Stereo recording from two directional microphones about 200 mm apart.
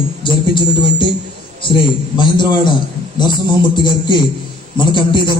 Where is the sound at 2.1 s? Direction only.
20° left (ahead or behind).